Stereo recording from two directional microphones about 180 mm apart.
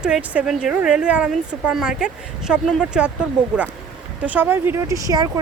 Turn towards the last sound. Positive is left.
turn(degrees=-20)  # may be behind; listen again after turning